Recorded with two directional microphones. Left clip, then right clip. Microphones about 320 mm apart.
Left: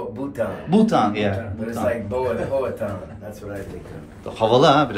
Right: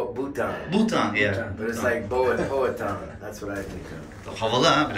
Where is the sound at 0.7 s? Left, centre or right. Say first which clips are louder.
Left 7 dB; centre.